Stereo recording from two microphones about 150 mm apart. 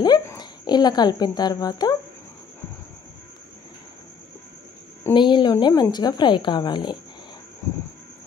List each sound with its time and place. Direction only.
0.0 s speech: 30° left (ahead or behind)
5.1 s a woman's voice: 30° left (ahead or behind)